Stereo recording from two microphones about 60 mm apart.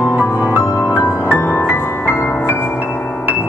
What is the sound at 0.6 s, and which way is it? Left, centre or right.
Music, left.